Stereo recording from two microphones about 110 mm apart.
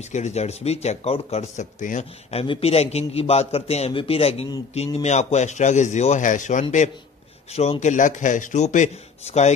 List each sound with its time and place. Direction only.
0.0 s speech: 90° left
2.4 s a man's voice: 60° left (ahead or behind)
4.7 s a man's voice: 80° left
7.5 s a man's voice: 70° left (ahead or behind); by 9.5 s 85° left